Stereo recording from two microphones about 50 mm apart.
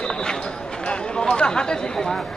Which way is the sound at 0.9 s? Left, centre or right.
Centre.